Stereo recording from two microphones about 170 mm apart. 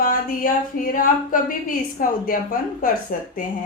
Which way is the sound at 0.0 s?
55° left (ahead or behind).